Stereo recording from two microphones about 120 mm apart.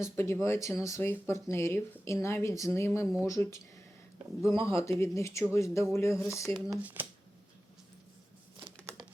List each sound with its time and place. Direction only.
0.0 s speech: 25° left (ahead or behind)
6.8 s speech: 15° right (ahead or behind)